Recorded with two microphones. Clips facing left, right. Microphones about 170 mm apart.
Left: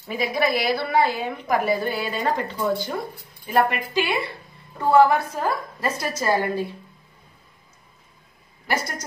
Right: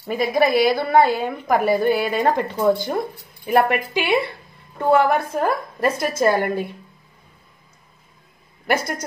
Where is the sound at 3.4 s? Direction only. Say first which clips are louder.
Right 3 dB; 65° right (ahead or behind).